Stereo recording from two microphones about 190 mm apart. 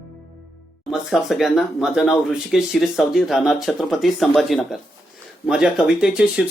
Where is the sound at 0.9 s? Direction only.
Centre (ahead or behind).